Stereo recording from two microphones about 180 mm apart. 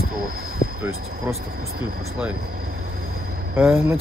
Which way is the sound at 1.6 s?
55° right (ahead or behind).